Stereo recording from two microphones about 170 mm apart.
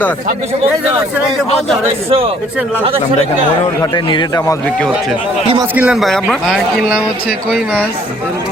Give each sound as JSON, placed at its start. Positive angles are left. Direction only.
{"t": 2.8, "sound": "speech", "side_deg": -35}
{"t": 3.8, "sound": "a man's voice", "side_deg": 25}
{"t": 5.7, "sound": "speech", "side_deg": -5}